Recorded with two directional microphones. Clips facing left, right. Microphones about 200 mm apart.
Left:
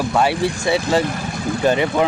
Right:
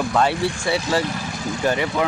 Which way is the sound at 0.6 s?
20° left (ahead or behind).